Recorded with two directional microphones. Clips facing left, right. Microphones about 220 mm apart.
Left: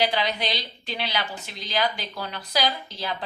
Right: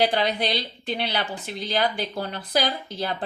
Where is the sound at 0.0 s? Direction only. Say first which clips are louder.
Right 3 dB; 50° right (ahead or behind).